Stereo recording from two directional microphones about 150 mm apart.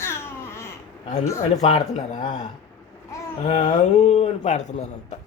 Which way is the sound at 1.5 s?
50° left (ahead or behind).